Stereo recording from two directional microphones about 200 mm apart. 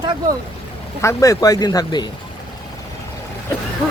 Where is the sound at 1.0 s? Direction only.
15° left (ahead or behind).